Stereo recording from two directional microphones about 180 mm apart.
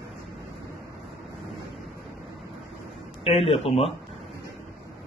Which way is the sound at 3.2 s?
35° left (ahead or behind).